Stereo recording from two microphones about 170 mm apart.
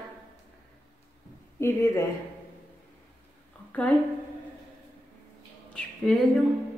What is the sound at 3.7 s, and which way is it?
Speech, 10° left (ahead or behind).